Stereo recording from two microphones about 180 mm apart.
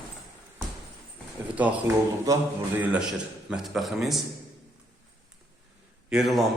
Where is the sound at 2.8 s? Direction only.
5° right (ahead or behind).